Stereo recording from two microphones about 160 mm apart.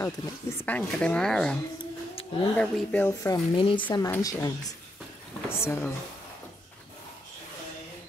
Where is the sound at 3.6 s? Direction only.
30° left (ahead or behind); by 5.9 s 15° left (ahead or behind).